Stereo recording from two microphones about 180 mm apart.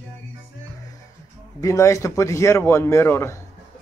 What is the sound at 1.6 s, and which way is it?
Speech, 15° left (ahead or behind).